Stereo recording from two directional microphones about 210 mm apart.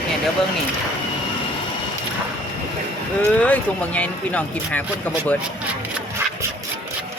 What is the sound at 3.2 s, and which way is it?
Speech, 5° left (ahead or behind).